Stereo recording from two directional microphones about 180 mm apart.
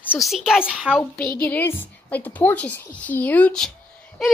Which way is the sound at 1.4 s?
10° left (ahead or behind).